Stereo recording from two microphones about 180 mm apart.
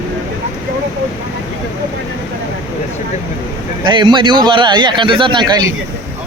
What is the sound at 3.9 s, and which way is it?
A man's voice, 25° right (ahead or behind).